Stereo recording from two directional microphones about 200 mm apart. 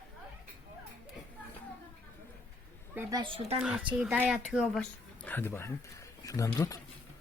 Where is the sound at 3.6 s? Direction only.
5° right (ahead or behind); by 6.7 s 15° left (ahead or behind).